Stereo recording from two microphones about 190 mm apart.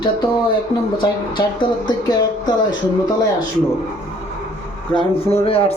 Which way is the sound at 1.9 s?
20° left (ahead or behind).